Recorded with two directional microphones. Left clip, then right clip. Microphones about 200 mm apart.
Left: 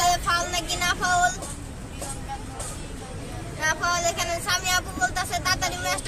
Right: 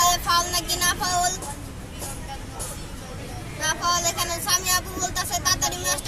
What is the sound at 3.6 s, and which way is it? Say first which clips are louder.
Child singing: left 1 dB; centre (ahead or behind).